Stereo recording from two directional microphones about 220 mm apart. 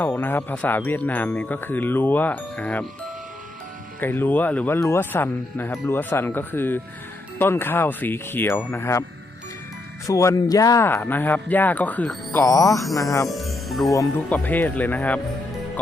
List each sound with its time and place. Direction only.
0.0 s speech: 10° left (ahead or behind)
4.0 s speech: 10° left (ahead or behind)
10.1 s speech: 15° left (ahead or behind)
13.2 s music: centre (ahead or behind)
13.9 s speech: 10° left (ahead or behind)